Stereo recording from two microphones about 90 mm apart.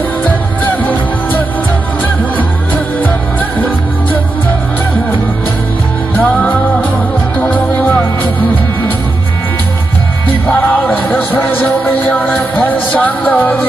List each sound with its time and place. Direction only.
0.3 s music: 20° left (ahead or behind)
6.1 s music: 20° left (ahead or behind)
10.9 s music: 15° left (ahead or behind)